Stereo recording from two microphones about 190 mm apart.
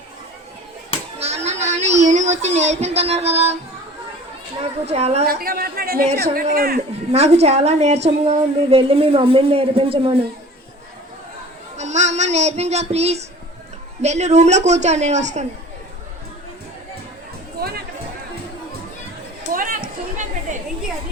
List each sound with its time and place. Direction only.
1.2 s a sound: 35° right (ahead or behind)
4.6 s a woman's voice: 35° right (ahead or behind)
5.3 s speech: 50° right (ahead or behind)
7.1 s a woman's voice: 35° right (ahead or behind)
11.8 s a woman's voice: 35° right (ahead or behind)
19.5 s a sound: 45° right (ahead or behind)